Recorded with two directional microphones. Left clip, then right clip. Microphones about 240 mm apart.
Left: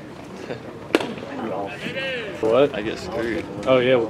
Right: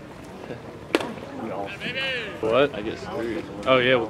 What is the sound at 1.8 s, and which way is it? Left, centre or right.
Speech, centre.